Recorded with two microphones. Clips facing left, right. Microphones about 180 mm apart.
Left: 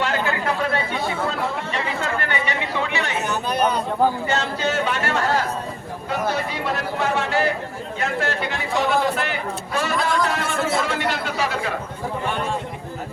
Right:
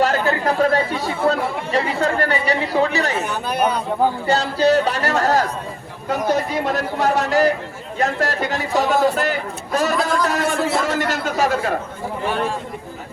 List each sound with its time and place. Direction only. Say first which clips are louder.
0.0 s chatter: right 5 dB; 40° right (ahead or behind)
3.2 s chatter: right 1 dB; 10° right (ahead or behind)
4.3 s speech: right 7 dB; 35° right (ahead or behind)
10.2 s a sound: right 4 dB; 40° right (ahead or behind)
10.8 s speech: right 3 dB; 45° right (ahead or behind)